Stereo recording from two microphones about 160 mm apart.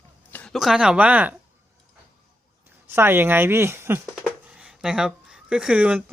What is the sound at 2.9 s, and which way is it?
Speech, 15° right (ahead or behind).